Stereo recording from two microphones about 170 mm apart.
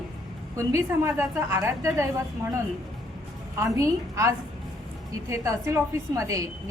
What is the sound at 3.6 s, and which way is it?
A woman's voice, 20° right (ahead or behind).